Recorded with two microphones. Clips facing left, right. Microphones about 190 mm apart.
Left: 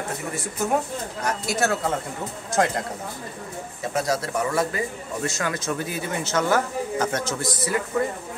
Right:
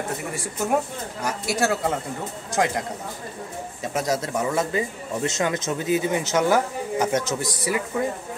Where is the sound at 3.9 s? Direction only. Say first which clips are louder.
Even; 20° right (ahead or behind).